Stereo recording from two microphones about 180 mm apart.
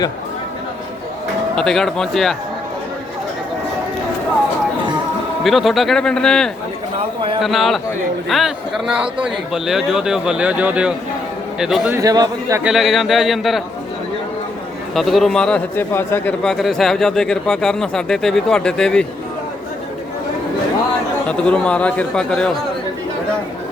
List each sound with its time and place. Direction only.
1.5 s speech: 5° left (ahead or behind)
5.4 s speech: centre (ahead or behind)
11.9 s a man's voice: 20° right (ahead or behind)
12.6 s speech: centre (ahead or behind)
14.9 s speech: centre (ahead or behind)
21.2 s speech: 5° left (ahead or behind)